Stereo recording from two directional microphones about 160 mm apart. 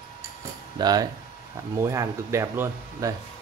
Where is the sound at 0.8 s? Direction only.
25° right (ahead or behind).